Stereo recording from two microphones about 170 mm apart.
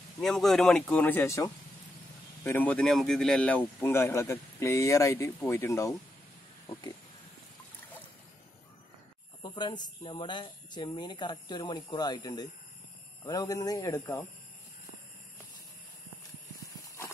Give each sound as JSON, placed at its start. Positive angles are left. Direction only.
{"t": 0.2, "sound": "a man's voice", "side_deg": 0}
{"t": 9.4, "sound": "speech", "side_deg": 25}
{"t": 16.7, "sound": "horse", "side_deg": 20}